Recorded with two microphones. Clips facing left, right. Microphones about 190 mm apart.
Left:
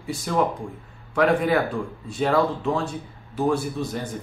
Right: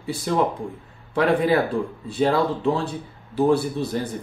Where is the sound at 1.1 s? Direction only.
30° right (ahead or behind).